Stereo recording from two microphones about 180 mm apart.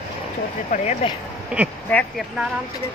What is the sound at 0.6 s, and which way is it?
Speech, 40° left (ahead or behind).